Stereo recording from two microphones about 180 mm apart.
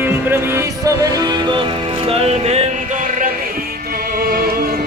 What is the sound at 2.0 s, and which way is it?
Music, 35° right (ahead or behind).